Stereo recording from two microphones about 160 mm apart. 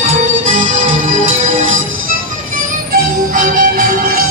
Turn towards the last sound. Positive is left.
turn(degrees=-55)  # may be behind; listen again after turning